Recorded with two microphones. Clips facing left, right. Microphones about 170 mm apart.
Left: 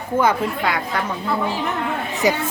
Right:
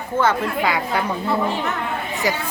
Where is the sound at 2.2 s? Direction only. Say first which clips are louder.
Left 4 dB; 20° left (ahead or behind).